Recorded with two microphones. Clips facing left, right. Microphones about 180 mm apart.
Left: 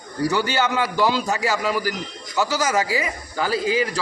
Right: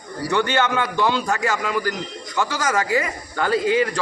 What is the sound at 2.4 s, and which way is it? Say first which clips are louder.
A man's voice: left 1 dB; 5° left (ahead or behind).